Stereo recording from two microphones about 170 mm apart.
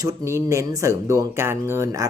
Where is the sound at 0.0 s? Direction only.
20° right (ahead or behind).